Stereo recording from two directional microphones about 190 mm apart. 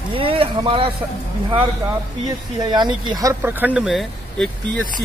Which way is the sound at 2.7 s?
20° right (ahead or behind).